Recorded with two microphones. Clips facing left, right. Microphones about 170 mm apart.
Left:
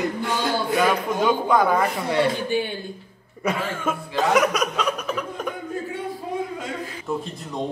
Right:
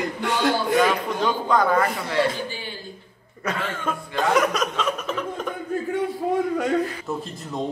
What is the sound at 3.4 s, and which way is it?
Chuckle, 10° left (ahead or behind).